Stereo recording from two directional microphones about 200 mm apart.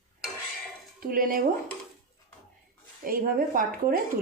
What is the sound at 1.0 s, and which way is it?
Speech, 45° right (ahead or behind).